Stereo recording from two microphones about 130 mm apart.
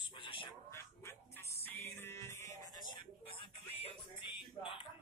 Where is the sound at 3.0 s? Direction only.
45° left (ahead or behind).